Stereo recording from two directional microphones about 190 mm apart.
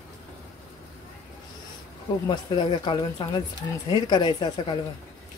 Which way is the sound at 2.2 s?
20° left (ahead or behind).